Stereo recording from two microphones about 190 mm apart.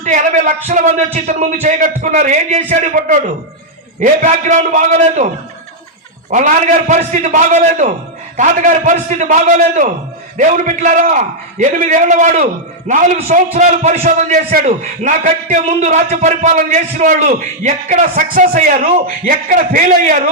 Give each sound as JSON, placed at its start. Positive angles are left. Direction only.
{"t": 0.0, "sound": "a sound", "side_deg": -45}
{"t": 0.7, "sound": "a man's voice", "side_deg": -40}
{"t": 6.3, "sound": "a man's voice", "side_deg": -40}